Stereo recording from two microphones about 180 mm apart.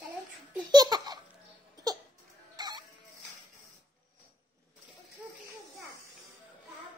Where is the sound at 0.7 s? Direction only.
20° right (ahead or behind).